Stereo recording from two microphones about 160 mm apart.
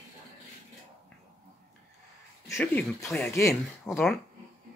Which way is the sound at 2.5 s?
15° left (ahead or behind).